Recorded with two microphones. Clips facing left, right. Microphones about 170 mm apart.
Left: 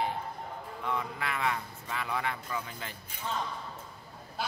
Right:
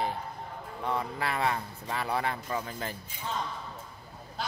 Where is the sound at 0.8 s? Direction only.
35° right (ahead or behind).